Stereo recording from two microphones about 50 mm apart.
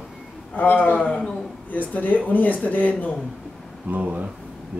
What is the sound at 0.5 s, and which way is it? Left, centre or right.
Speech, left.